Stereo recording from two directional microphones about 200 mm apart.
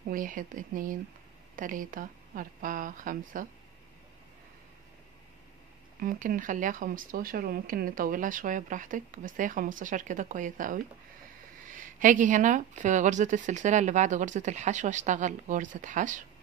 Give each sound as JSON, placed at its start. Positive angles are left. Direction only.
{"t": 0.1, "sound": "speech", "side_deg": -40}
{"t": 5.9, "sound": "speech", "side_deg": -40}